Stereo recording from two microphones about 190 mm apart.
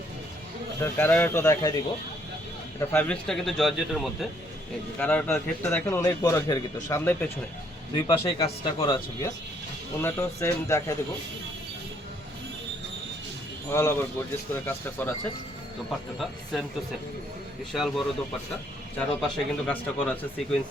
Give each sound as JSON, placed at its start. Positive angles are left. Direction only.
{"t": 0.8, "sound": "a man's voice", "side_deg": 10}
{"t": 2.9, "sound": "a man's voice", "side_deg": 5}
{"t": 8.0, "sound": "a man's voice", "side_deg": 25}
{"t": 13.7, "sound": "a man's voice", "side_deg": 15}
{"t": 16.1, "sound": "a man's voice", "side_deg": 0}
{"t": 17.7, "sound": "a man's voice", "side_deg": 0}